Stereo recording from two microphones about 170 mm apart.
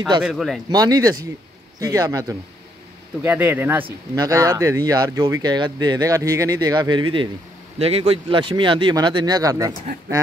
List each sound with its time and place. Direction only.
0.2 s speech: centre (ahead or behind)
0.7 s speech: 20° right (ahead or behind)
3.8 s speech: 20° right (ahead or behind)